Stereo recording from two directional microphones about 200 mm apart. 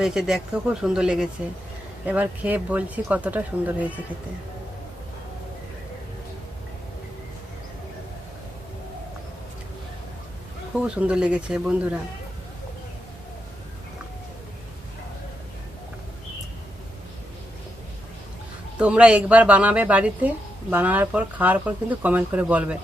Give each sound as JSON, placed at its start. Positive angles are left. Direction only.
{"t": 0.0, "sound": "a woman's voice", "side_deg": 0}
{"t": 10.8, "sound": "speech", "side_deg": -5}
{"t": 18.8, "sound": "a woman's voice", "side_deg": -5}